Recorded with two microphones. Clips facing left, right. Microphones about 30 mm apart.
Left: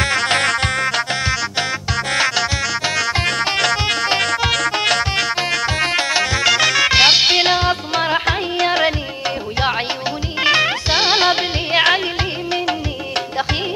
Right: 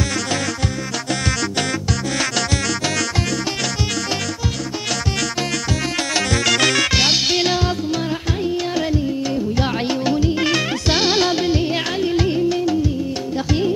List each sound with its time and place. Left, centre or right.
6.1 s music: centre
6.9 s music: left
8.1 s music: left
10.4 s music: left